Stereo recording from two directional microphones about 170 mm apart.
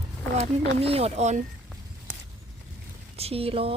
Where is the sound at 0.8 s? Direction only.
35° right (ahead or behind).